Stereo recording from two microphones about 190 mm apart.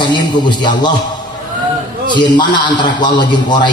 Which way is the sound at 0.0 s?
25° left (ahead or behind).